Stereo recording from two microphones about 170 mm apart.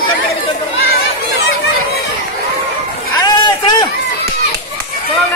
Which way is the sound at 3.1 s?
25° left (ahead or behind).